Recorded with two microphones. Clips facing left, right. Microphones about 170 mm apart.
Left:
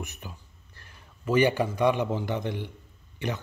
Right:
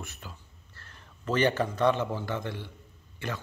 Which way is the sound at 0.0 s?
15° left (ahead or behind).